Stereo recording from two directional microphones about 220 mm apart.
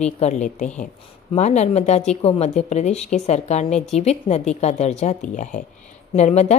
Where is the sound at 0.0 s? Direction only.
30° left (ahead or behind).